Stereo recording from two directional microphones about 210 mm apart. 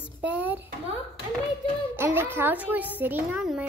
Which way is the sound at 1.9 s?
10° right (ahead or behind).